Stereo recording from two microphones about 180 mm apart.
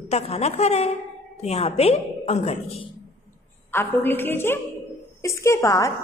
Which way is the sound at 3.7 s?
10° left (ahead or behind).